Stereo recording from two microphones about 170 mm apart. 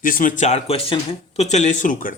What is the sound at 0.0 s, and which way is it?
Speech, 55° left (ahead or behind).